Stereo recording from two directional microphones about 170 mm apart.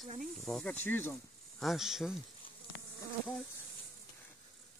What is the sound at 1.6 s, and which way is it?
Speech, centre (ahead or behind).